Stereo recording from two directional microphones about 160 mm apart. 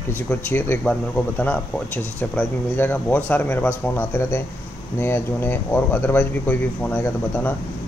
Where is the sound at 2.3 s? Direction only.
10° left (ahead or behind).